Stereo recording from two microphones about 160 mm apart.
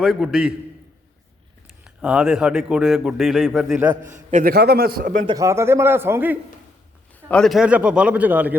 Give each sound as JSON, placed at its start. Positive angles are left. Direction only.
{"t": 0.0, "sound": "a man's voice", "side_deg": 0}
{"t": 1.8, "sound": "a man's voice", "side_deg": -5}
{"t": 4.3, "sound": "a man's voice", "side_deg": -50}
{"t": 4.5, "sound": "a man's voice", "side_deg": -80}
{"t": 5.2, "sound": "a man's voice", "side_deg": -25}
{"t": 7.3, "sound": "a man's voice", "side_deg": 5}